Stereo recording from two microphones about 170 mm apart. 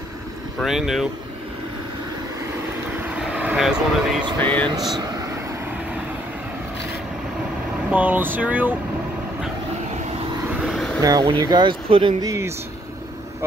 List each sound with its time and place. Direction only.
0.6 s speech: centre (ahead or behind)
3.0 s vehicle: 5° right (ahead or behind)
4.4 s speech: 10° left (ahead or behind)
7.9 s speech: 10° right (ahead or behind)
10.5 s vehicle: centre (ahead or behind)
11.0 s speech: 20° right (ahead or behind)
12.3 s speech: 15° right (ahead or behind)